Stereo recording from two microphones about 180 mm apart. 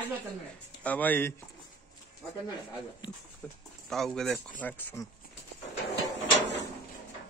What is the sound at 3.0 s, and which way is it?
Speech, 25° left (ahead or behind).